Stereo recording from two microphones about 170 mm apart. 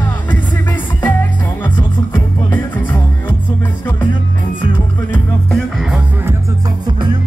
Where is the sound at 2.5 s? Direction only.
10° left (ahead or behind).